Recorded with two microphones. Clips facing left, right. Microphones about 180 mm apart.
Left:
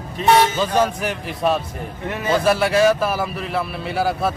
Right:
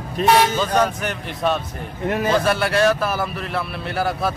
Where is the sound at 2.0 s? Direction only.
40° right (ahead or behind).